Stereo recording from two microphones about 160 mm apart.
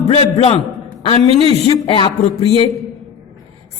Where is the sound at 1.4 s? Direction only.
35° right (ahead or behind).